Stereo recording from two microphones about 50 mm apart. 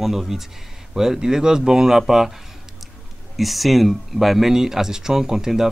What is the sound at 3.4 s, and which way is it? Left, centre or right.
Speech, centre.